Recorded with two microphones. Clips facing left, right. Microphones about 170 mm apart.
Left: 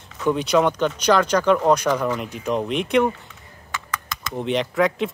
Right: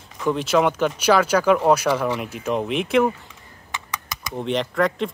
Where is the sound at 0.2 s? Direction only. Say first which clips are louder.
Left 1 dB; centre (ahead or behind).